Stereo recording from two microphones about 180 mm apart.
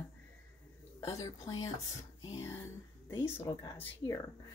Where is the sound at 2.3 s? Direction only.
15° left (ahead or behind).